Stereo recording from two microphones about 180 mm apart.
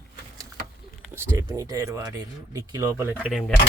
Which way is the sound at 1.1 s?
15° right (ahead or behind).